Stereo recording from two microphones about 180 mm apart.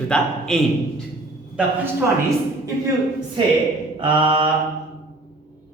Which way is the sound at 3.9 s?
25° right (ahead or behind).